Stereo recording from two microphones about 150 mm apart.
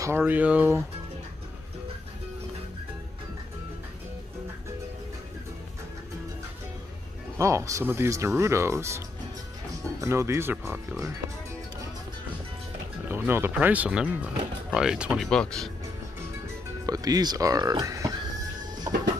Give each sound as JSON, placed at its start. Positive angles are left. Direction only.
{"t": 0.0, "sound": "speech", "side_deg": -15}
{"t": 7.3, "sound": "speech", "side_deg": -20}
{"t": 13.1, "sound": "speech", "side_deg": -15}
{"t": 16.8, "sound": "speech", "side_deg": -25}